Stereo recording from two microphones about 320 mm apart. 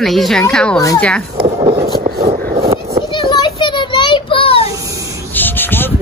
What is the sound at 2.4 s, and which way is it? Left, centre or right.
Vehicle, right.